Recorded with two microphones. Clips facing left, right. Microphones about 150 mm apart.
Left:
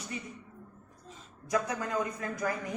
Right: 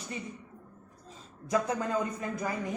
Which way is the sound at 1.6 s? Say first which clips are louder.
Right 2 dB; 25° right (ahead or behind).